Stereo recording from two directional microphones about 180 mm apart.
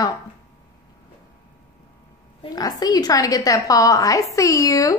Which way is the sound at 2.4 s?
20° left (ahead or behind).